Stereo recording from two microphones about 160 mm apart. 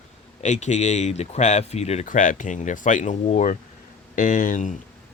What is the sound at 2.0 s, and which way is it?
Speech, 55° left (ahead or behind).